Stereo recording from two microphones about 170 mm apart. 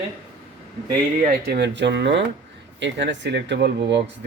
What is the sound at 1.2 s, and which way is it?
Speech, 65° right (ahead or behind).